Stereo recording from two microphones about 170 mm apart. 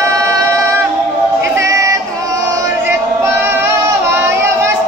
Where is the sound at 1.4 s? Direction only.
15° right (ahead or behind).